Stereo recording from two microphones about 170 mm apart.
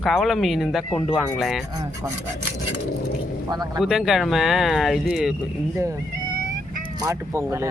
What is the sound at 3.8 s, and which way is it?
Speech, centre (ahead or behind).